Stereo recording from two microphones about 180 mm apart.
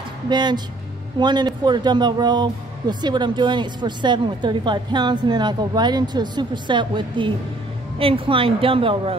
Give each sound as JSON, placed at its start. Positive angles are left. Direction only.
{"t": 0.3, "sound": "a woman's voice", "side_deg": -25}